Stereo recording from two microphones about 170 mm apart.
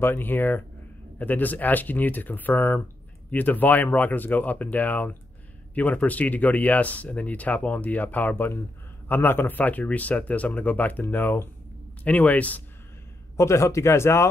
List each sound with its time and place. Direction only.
0.0 s speech: 10° left (ahead or behind)